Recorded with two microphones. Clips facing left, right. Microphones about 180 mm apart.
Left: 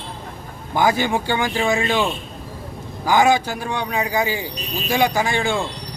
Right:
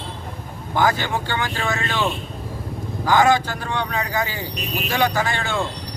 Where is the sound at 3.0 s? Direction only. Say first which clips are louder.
Left 1 dB; 10° left (ahead or behind).